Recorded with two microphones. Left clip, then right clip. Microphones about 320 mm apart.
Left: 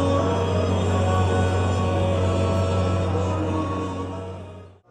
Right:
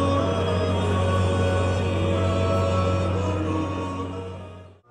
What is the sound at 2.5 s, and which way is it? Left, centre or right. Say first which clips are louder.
Music: right 1 dB; left.